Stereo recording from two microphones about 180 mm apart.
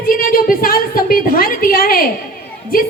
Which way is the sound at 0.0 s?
55° left (ahead or behind).